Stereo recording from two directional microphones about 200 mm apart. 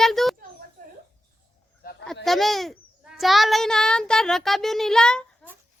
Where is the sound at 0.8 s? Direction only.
45° right (ahead or behind).